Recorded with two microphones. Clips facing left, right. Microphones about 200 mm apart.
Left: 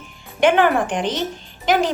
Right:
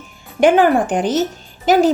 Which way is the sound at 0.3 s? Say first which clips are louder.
Right 4 dB; 35° right (ahead or behind).